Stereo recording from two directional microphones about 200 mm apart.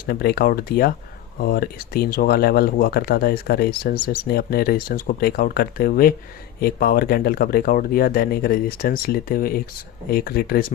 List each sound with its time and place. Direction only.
0.0 s speech: 50° left (ahead or behind)